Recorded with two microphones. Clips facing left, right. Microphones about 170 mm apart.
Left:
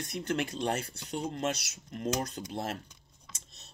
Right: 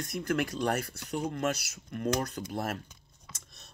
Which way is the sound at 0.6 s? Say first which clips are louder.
Right 2 dB; 55° right (ahead or behind).